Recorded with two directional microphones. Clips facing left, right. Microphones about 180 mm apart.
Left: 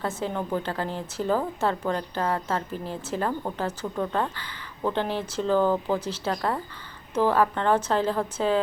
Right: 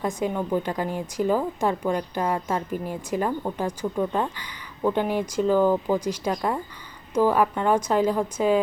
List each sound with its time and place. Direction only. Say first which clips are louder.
0.0 s a woman's voice: right 3 dB; 15° right (ahead or behind)